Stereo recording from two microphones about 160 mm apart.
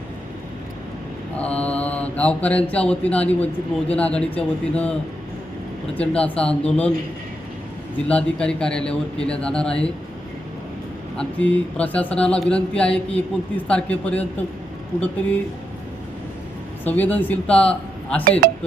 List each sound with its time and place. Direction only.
1.4 s mantra: 10° left (ahead or behind)
7.9 s a man's voice: 10° left (ahead or behind)
11.2 s mantra: 10° left (ahead or behind)
16.8 s mantra: 10° left (ahead or behind)
18.3 s speech: 65° right (ahead or behind)